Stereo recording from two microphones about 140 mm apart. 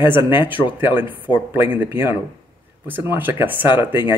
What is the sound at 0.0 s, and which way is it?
Speech, 15° right (ahead or behind).